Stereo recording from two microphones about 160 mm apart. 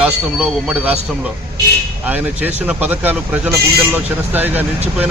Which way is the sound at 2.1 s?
10° right (ahead or behind).